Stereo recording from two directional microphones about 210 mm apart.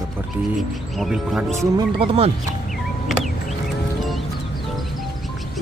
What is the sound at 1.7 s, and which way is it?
Speech, 25° right (ahead or behind).